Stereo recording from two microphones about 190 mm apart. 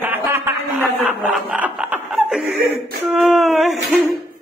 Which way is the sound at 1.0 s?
5° right (ahead or behind).